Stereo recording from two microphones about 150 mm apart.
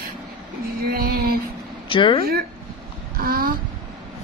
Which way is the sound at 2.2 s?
90° right.